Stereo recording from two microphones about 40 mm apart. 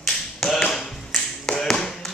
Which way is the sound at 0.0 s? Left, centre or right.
Centre.